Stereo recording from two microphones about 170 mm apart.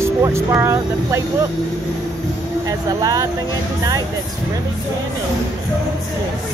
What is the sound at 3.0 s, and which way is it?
Speech, 20° right (ahead or behind).